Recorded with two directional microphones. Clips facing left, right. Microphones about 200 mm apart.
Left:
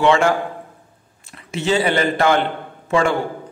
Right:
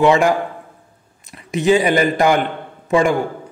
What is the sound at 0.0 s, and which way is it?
A man's voice, 15° right (ahead or behind).